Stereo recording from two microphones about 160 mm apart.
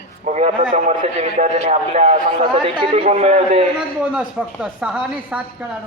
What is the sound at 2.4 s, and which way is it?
A man's voice, 30° right (ahead or behind).